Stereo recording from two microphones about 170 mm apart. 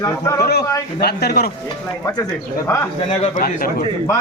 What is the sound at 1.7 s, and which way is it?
Speech, 20° left (ahead or behind).